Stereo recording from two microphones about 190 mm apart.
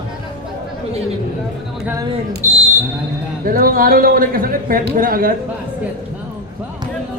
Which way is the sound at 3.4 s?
50° right (ahead or behind).